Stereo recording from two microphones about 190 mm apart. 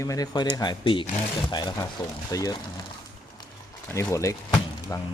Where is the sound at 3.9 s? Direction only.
15° left (ahead or behind).